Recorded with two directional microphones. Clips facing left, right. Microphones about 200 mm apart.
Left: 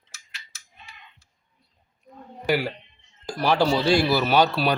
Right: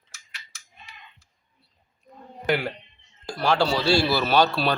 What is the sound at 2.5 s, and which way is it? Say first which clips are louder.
Speech: left 1 dB; 10° left (ahead or behind).